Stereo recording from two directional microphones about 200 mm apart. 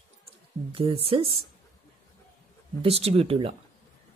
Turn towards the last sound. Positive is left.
turn(degrees=-30)  # may be behind; listen again after turning